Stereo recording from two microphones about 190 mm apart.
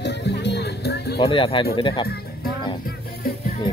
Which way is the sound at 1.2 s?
25° left (ahead or behind).